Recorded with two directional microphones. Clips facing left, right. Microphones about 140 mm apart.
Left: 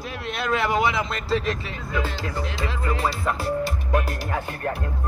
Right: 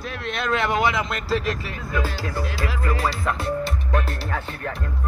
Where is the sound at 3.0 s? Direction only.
5° left (ahead or behind).